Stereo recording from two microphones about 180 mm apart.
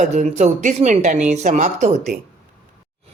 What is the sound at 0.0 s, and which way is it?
Speech, 40° right (ahead or behind).